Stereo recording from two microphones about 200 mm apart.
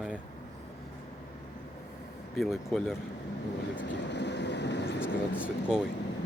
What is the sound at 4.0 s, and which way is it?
Vehicle, 60° left (ahead or behind).